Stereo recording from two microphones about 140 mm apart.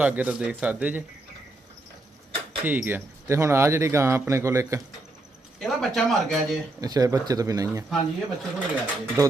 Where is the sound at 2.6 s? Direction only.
15° right (ahead or behind).